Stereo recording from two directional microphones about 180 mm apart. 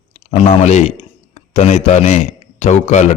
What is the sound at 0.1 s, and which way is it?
Speech, 40° left (ahead or behind).